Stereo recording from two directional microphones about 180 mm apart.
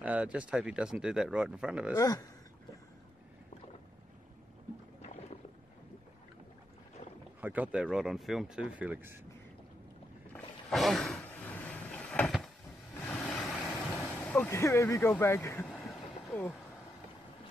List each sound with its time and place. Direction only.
0.0 s speech: 5° right (ahead or behind)
2.0 s speech: 20° left (ahead or behind)
7.3 s speech: 10° right (ahead or behind)
10.3 s a sound: centre (ahead or behind)
12.9 s vehicle: 10° left (ahead or behind)
14.0 s speech: 10° left (ahead or behind)
15.7 s vehicle: centre (ahead or behind)